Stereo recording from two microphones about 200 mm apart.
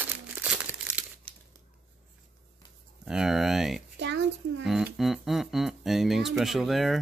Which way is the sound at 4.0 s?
65° right (ahead or behind).